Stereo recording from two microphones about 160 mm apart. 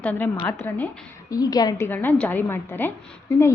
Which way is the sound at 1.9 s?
10° left (ahead or behind).